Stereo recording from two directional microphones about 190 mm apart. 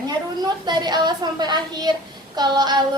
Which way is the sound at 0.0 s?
20° right (ahead or behind).